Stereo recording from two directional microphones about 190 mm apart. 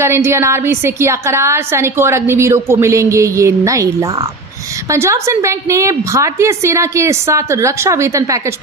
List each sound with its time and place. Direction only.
0.0 s a woman's voice: 15° right (ahead or behind)